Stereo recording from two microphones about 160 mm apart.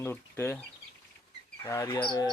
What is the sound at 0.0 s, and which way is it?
Speech, 15° left (ahead or behind).